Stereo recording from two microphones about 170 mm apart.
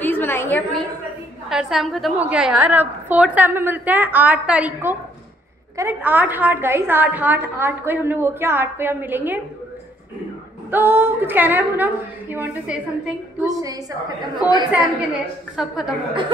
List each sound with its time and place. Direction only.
0.0 s a sound: 10° left (ahead or behind)
1.5 s a woman's voice: centre (ahead or behind)
10.7 s a woman's voice: 10° right (ahead or behind)
13.5 s a woman's voice: 20° right (ahead or behind)
14.4 s a woman's voice: 10° right (ahead or behind)